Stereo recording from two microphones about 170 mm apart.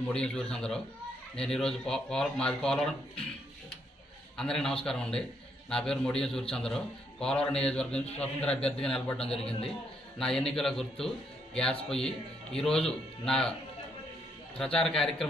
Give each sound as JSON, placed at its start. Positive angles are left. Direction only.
{"t": 0.1, "sound": "a man's voice", "side_deg": 5}
{"t": 4.4, "sound": "a man's voice", "side_deg": 5}
{"t": 9.3, "sound": "a man's voice", "side_deg": 35}
{"t": 10.1, "sound": "a man's voice", "side_deg": 5}
{"t": 14.6, "sound": "a man's voice", "side_deg": 5}